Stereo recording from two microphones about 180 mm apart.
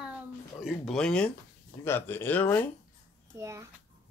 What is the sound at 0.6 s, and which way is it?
Speech, centre (ahead or behind).